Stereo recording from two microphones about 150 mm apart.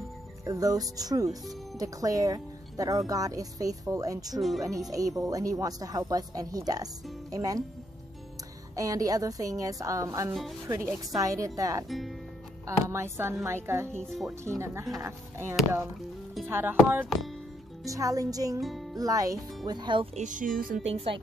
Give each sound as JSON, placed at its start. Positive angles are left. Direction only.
{"t": 0.5, "sound": "speech", "side_deg": -25}
{"t": 4.4, "sound": "speech", "side_deg": 0}
{"t": 4.9, "sound": "speech", "side_deg": -25}
{"t": 8.7, "sound": "a woman's voice", "side_deg": -25}
{"t": 18.6, "sound": "music", "side_deg": 0}
{"t": 18.9, "sound": "speech", "side_deg": -25}
{"t": 20.2, "sound": "speech", "side_deg": -60}
{"t": 20.8, "sound": "speech", "side_deg": -45}